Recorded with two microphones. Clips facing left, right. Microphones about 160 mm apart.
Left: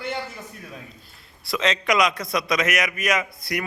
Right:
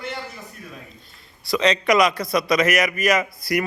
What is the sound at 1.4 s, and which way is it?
A man's voice, centre (ahead or behind).